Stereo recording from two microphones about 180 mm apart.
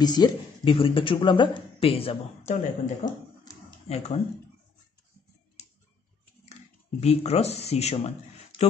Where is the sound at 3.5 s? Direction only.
20° left (ahead or behind).